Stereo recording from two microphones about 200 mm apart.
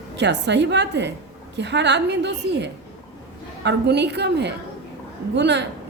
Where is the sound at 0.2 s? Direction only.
60° right (ahead or behind).